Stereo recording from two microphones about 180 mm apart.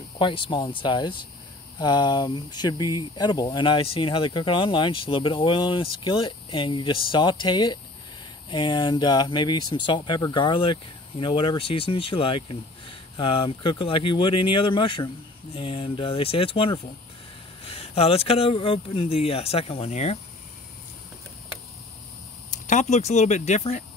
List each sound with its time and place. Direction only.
0.2 s speech: 25° left (ahead or behind)
22.7 s speech: 40° left (ahead or behind)